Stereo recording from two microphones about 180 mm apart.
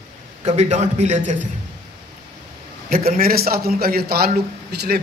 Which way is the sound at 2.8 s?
55° right (ahead or behind).